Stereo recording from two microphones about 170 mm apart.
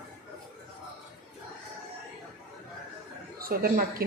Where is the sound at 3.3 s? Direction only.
60° right (ahead or behind).